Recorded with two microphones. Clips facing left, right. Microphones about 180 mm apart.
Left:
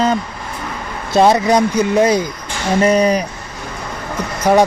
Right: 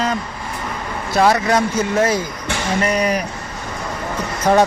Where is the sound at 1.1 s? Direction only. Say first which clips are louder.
Left 4 dB; 20° left (ahead or behind).